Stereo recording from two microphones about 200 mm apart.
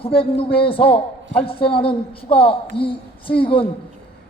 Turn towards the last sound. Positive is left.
turn(degrees=25)  # may be behind; listen again after turning